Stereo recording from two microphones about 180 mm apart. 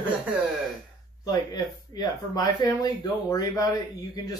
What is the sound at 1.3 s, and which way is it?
Speech, 25° left (ahead or behind).